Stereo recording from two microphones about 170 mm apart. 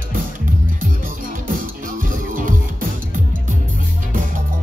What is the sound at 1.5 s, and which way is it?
Music, 55° right (ahead or behind).